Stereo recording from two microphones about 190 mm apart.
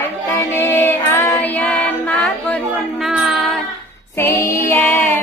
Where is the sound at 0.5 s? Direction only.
10° left (ahead or behind).